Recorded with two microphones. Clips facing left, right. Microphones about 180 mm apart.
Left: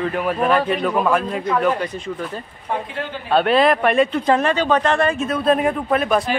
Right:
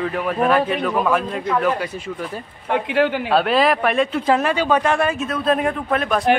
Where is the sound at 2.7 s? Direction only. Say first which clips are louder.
Right 7 dB; 75° right (ahead or behind).